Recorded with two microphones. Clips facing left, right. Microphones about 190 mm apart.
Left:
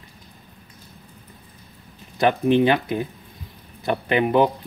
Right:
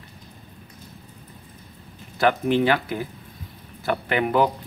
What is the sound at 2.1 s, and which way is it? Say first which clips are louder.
Speech: left 2 dB; 20° left (ahead or behind).